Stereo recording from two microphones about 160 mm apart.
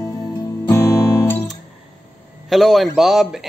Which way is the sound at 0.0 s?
20° left (ahead or behind).